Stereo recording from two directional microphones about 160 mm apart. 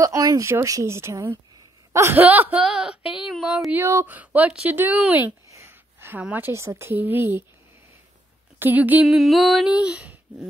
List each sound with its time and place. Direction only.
0.0 s speech: 20° right (ahead or behind)
8.5 s speech: 10° right (ahead or behind)